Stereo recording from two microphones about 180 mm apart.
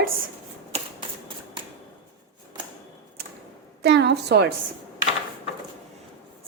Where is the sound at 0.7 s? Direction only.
35° right (ahead or behind).